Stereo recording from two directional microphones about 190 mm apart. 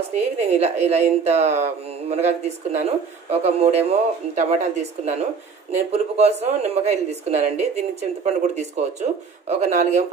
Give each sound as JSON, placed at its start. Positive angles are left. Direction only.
{"t": 0.1, "sound": "speech", "side_deg": -35}